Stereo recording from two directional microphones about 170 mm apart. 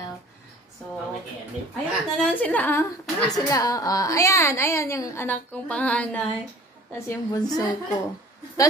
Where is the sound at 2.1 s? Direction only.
10° left (ahead or behind).